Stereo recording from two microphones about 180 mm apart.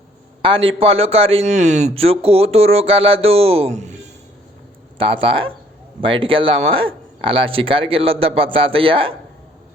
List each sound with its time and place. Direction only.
0.4 s a man's voice: 30° right (ahead or behind)
4.9 s a man's voice: 30° right (ahead or behind)